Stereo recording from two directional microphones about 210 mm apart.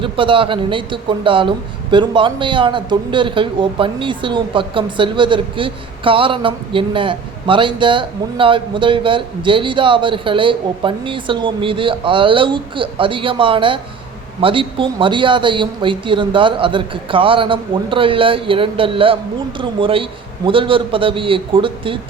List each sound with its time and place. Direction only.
0.0 s a man's voice: 25° right (ahead or behind)